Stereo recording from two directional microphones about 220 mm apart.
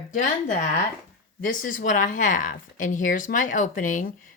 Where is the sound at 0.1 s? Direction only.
35° left (ahead or behind).